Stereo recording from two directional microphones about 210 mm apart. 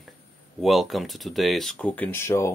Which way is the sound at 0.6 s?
Centre (ahead or behind).